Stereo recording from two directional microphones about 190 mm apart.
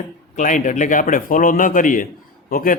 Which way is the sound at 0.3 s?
40° left (ahead or behind).